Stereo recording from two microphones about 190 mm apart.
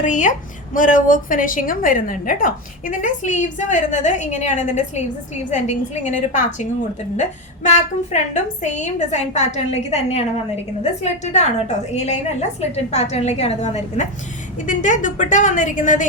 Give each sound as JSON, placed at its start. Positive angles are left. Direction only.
{"t": 0.0, "sound": "a woman's voice", "side_deg": 40}
{"t": 7.7, "sound": "a woman's voice", "side_deg": 40}